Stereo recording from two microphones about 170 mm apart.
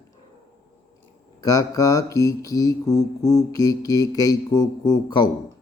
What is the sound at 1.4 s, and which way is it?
Speech, 20° left (ahead or behind).